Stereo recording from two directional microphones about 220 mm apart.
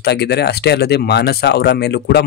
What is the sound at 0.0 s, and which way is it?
Speech, 50° left (ahead or behind).